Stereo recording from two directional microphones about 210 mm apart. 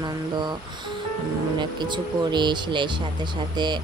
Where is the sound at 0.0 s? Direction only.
20° right (ahead or behind).